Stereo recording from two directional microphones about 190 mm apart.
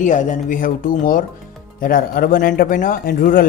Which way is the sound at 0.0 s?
40° left (ahead or behind).